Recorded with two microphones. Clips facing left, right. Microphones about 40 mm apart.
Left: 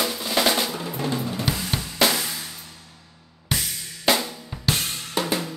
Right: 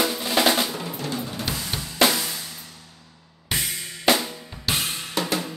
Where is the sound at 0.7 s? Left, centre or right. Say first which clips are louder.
Left 1 dB; centre.